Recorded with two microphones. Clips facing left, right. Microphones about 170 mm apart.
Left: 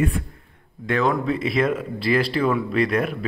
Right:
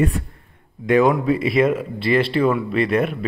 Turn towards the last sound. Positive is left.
turn(degrees=-5)  # may be behind; listen again after turning